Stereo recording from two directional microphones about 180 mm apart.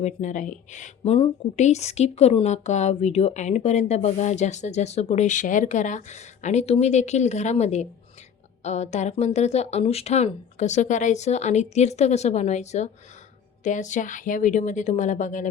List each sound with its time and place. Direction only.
0.0 s a woman's voice: 45° left (ahead or behind)